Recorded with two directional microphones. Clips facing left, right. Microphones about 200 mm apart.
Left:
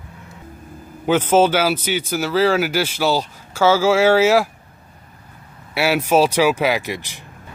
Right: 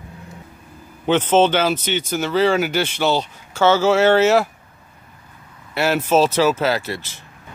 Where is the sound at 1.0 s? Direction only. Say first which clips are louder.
Even; 10° left (ahead or behind).